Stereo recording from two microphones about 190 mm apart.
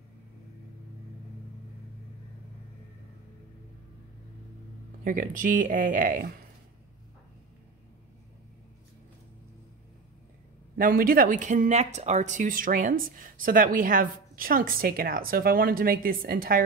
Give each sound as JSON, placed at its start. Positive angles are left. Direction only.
{"t": 5.0, "sound": "speech", "side_deg": -45}
{"t": 10.8, "sound": "speech", "side_deg": -50}